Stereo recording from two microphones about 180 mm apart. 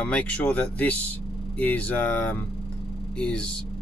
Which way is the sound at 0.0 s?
10° left (ahead or behind).